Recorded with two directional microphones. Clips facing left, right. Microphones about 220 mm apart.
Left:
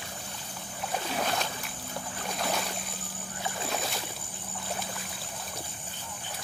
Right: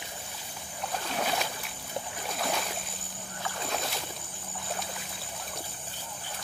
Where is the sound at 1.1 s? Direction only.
Centre (ahead or behind).